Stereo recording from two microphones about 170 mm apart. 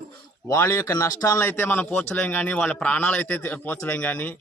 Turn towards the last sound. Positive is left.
turn(degrees=10)  # may be behind; listen again after turning